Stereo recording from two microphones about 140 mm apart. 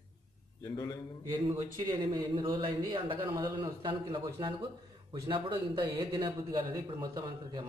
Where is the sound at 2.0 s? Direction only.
35° right (ahead or behind).